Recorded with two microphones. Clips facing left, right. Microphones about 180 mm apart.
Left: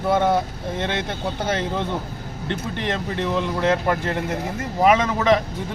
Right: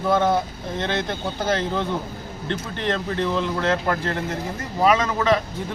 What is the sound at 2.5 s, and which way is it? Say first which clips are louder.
Speech: even; 15° left (ahead or behind).